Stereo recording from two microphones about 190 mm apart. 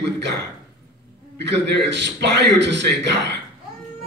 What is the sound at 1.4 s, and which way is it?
Speech, 65° right (ahead or behind).